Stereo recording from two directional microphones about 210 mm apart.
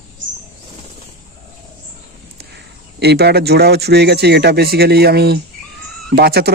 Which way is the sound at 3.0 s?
50° right (ahead or behind).